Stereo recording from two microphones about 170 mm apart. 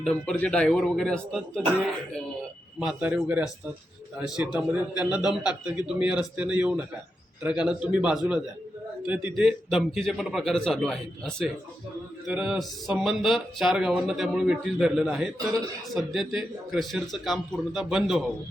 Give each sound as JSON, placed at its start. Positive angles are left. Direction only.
{"t": 0.0, "sound": "speech", "side_deg": 5}
{"t": 2.7, "sound": "speech", "side_deg": 0}